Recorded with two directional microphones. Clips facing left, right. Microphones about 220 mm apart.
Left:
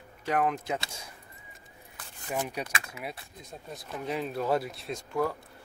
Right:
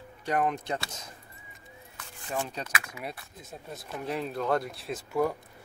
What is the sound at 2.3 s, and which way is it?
Speech, 10° left (ahead or behind).